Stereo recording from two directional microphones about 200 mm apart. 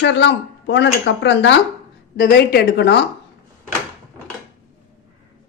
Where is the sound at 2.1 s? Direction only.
50° left (ahead or behind).